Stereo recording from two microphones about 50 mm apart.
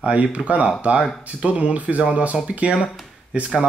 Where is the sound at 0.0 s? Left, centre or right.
Right.